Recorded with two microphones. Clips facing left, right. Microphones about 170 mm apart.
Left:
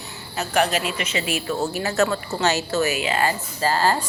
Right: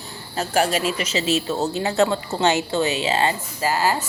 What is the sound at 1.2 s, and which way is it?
Speech, 25° right (ahead or behind).